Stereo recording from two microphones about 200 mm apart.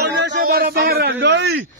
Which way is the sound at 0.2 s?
55° right (ahead or behind).